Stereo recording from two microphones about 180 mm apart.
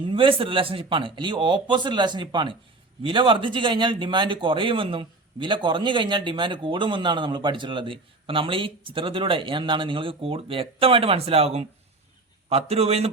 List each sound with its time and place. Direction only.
0.0 s a man's voice: 30° right (ahead or behind)